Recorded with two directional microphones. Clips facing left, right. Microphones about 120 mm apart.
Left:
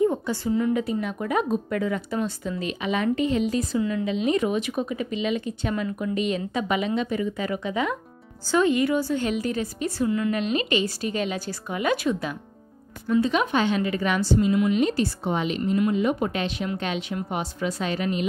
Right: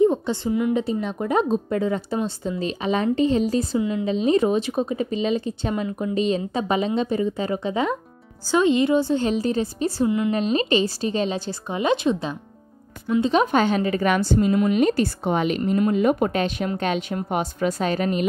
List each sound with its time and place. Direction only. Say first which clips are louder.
0.0 s speech: right 4 dB; 25° right (ahead or behind)
10.3 s a woman's voice: right 4 dB; 35° right (ahead or behind)